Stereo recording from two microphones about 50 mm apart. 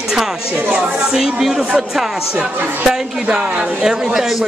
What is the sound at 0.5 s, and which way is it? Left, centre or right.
Speech, right.